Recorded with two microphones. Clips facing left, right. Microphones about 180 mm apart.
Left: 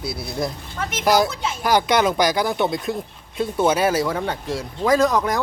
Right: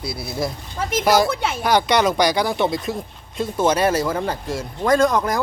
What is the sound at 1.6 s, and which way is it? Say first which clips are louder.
Speech: even; 10° left (ahead or behind).